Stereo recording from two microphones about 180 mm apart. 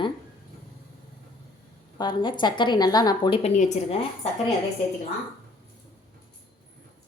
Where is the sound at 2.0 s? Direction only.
25° left (ahead or behind).